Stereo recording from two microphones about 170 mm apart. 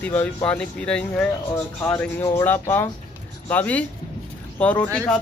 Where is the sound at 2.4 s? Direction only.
10° left (ahead or behind).